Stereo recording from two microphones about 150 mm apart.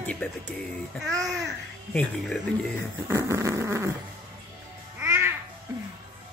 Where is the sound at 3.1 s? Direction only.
20° right (ahead or behind).